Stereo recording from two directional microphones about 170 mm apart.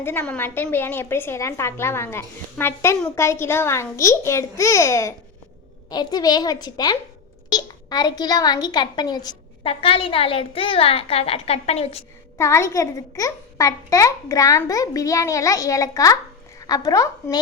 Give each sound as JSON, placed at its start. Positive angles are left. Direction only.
{"t": 0.0, "sound": "a woman's voice", "side_deg": 10}
{"t": 12.4, "sound": "a child's voice", "side_deg": 15}